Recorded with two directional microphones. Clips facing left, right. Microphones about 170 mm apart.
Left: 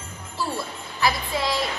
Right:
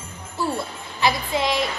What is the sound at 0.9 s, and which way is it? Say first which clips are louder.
Speech: right 2 dB; 20° right (ahead or behind).